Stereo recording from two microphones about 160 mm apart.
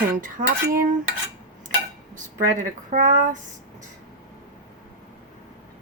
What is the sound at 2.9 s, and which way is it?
Speech, 55° right (ahead or behind).